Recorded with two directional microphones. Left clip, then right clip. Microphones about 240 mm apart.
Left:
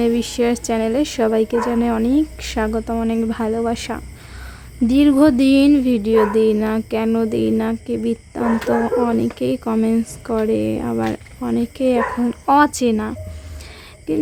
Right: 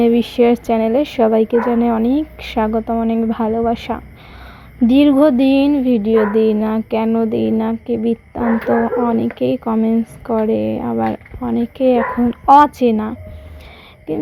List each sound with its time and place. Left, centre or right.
0.0 s speech: centre